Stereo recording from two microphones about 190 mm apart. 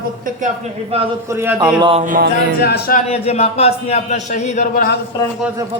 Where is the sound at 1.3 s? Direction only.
15° right (ahead or behind).